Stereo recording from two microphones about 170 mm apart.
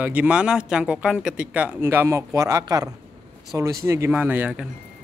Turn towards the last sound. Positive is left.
turn(degrees=-10)  # may be behind; listen again after turning